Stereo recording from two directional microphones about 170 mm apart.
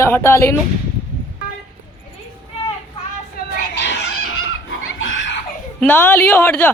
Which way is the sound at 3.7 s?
90° left.